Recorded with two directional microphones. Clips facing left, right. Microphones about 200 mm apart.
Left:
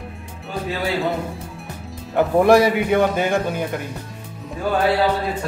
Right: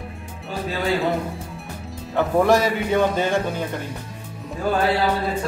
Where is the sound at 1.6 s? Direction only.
Centre (ahead or behind).